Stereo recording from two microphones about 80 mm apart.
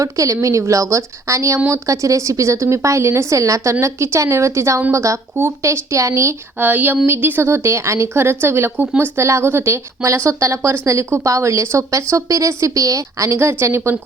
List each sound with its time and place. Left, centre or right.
0.0 s a woman's voice: right
6.6 s a woman's voice: right